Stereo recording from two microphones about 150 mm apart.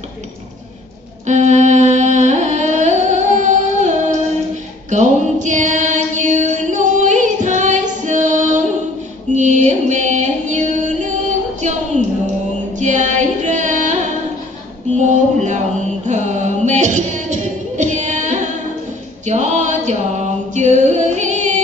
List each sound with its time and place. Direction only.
1.2 s music: 50° right (ahead or behind)
4.8 s female singing: 55° right (ahead or behind)
9.3 s music: 55° right (ahead or behind)
15.0 s a sound: 55° right (ahead or behind)
16.1 s music: 55° right (ahead or behind)
19.2 s a sound: 55° right (ahead or behind)
20.5 s music: 55° right (ahead or behind)